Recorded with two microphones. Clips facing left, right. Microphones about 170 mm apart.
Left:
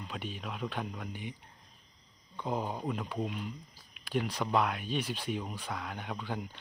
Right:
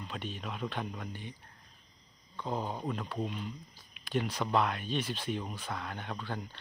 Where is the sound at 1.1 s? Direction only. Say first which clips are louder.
Left 3 dB; 15° left (ahead or behind).